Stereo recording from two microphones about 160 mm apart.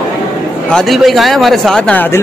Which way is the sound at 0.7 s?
Centre (ahead or behind).